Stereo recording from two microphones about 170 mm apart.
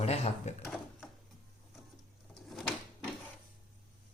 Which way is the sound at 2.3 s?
Centre (ahead or behind).